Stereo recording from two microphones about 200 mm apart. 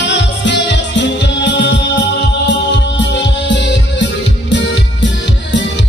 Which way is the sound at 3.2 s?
65° left (ahead or behind).